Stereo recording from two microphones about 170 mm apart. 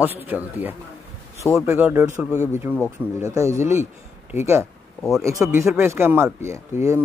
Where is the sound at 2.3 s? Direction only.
15° left (ahead or behind).